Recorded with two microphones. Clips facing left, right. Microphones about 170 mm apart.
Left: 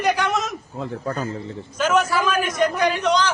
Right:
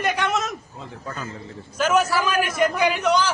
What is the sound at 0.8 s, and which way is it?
Speech, 55° left (ahead or behind).